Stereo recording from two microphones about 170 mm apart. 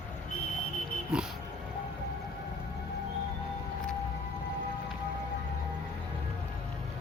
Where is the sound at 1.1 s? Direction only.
5° right (ahead or behind).